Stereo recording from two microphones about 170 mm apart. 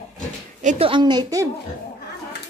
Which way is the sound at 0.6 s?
30° right (ahead or behind).